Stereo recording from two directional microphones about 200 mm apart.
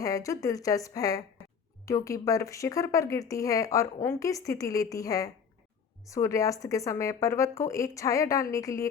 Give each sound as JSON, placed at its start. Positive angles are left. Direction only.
{"t": 0.0, "sound": "speech", "side_deg": 15}